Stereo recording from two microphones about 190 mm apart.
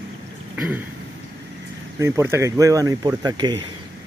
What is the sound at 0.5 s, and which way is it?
Throat clearing, 10° right (ahead or behind).